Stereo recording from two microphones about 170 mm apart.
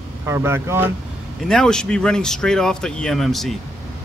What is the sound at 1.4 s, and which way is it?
Speech, 5° left (ahead or behind).